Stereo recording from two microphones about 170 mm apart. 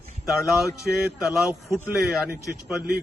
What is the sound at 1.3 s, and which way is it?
Speech, centre (ahead or behind).